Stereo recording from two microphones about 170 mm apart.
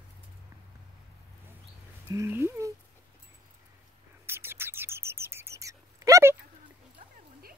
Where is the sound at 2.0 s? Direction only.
15° right (ahead or behind).